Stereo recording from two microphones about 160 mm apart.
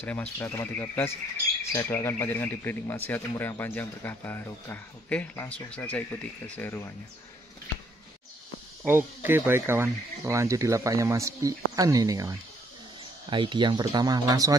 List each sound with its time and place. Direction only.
0.0 s speech: 10° left (ahead or behind)
8.8 s speech: 15° right (ahead or behind)